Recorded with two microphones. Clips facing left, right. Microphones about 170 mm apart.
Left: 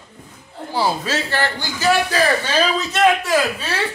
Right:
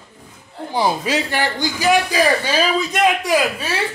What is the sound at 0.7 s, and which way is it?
A man's voice, 15° right (ahead or behind).